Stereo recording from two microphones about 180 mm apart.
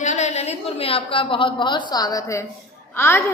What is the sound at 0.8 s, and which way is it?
A woman's voice, 30° left (ahead or behind).